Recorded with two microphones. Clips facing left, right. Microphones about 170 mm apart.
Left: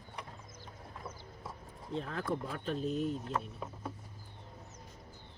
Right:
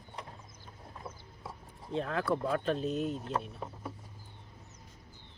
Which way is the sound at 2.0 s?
80° right.